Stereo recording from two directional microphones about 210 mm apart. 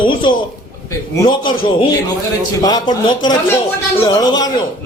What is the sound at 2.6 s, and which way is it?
Speech, 20° left (ahead or behind).